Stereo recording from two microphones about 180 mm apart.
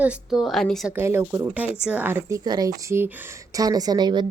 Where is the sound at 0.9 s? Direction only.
10° right (ahead or behind).